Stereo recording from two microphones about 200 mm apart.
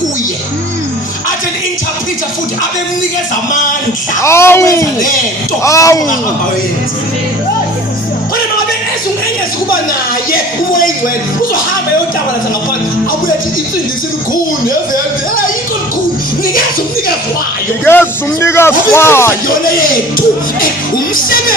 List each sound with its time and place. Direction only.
4.2 s speech: 15° left (ahead or behind)
17.8 s speech: 10° left (ahead or behind)
19.5 s speech: 45° left (ahead or behind)